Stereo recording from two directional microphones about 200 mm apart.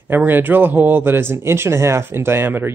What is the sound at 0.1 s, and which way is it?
Speech, 10° right (ahead or behind).